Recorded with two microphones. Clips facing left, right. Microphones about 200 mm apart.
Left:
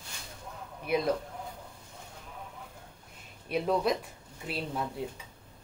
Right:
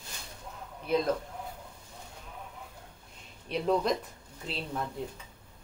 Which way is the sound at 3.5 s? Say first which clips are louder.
Even; 5° left (ahead or behind).